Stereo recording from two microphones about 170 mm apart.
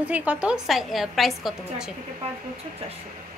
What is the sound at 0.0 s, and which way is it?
A woman's voice, 10° right (ahead or behind).